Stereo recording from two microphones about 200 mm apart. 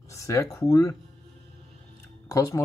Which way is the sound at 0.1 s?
15° left (ahead or behind).